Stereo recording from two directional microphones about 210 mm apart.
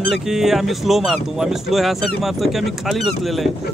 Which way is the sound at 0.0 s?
Centre (ahead or behind).